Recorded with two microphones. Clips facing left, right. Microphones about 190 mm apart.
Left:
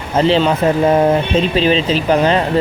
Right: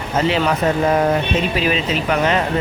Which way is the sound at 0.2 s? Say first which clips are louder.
Left 5 dB; 30° left (ahead or behind).